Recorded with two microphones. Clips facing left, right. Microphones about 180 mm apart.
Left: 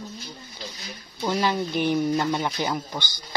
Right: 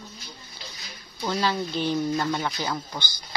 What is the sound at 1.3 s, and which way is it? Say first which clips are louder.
Speech: left 2 dB; 15° left (ahead or behind).